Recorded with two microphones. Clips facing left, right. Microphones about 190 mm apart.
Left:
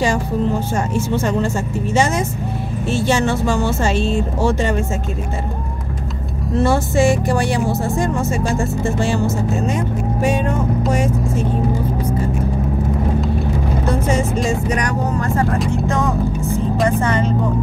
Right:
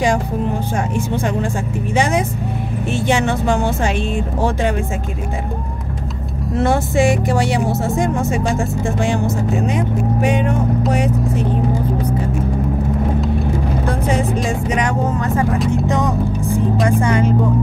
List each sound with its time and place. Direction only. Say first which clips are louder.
2.9 s speech: left 1 dB; 20° right (ahead or behind)
6.6 s music: even; 20° right (ahead or behind)
8.8 s speech: even; 15° right (ahead or behind)
14.7 s music: right 1 dB; 20° right (ahead or behind)
17.0 s speech: right 2 dB; 10° right (ahead or behind)